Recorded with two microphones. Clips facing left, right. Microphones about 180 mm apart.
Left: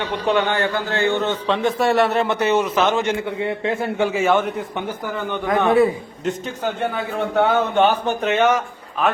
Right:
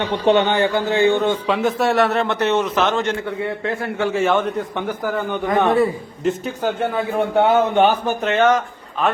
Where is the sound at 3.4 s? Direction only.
20° left (ahead or behind).